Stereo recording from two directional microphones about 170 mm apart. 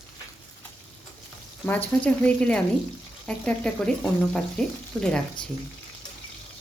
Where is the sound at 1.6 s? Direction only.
10° left (ahead or behind).